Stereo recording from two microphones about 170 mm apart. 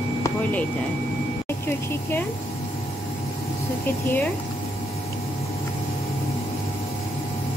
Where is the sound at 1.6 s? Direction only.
10° left (ahead or behind).